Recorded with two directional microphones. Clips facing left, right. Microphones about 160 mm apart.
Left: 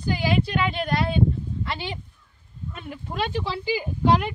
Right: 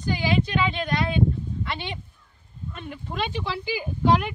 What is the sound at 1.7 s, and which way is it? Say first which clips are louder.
Speech: left 1 dB; centre (ahead or behind).